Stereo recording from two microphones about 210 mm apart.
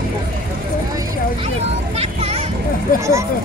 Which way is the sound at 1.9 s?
30° right (ahead or behind).